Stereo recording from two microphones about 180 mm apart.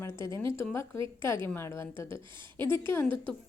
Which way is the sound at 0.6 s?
15° left (ahead or behind).